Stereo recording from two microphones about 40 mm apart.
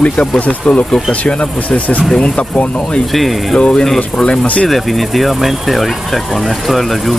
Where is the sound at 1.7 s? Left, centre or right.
Left.